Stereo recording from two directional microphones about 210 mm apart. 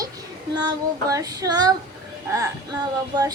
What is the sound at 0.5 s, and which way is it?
Child singing, 20° right (ahead or behind).